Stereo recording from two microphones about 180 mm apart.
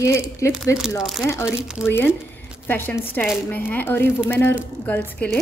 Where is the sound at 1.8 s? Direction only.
10° left (ahead or behind).